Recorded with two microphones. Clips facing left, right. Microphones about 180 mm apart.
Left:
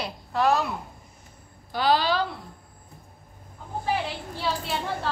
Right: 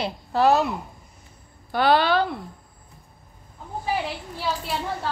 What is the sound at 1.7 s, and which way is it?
Speech, 60° right (ahead or behind).